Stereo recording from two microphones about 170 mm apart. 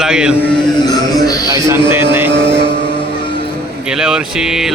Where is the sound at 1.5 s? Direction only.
20° right (ahead or behind).